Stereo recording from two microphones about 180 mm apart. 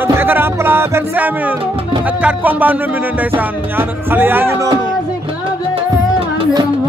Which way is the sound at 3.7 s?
10° right (ahead or behind).